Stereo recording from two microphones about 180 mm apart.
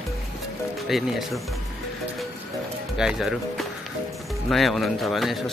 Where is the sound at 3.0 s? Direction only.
5° right (ahead or behind).